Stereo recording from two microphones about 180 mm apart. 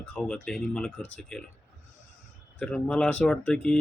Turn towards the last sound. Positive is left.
turn(degrees=5)  # may be behind; listen again after turning